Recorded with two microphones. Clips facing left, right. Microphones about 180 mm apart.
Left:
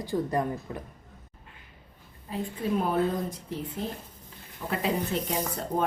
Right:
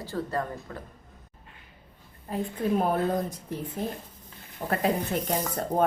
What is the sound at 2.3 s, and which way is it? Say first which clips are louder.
Speech: right 2 dB; 50° right (ahead or behind).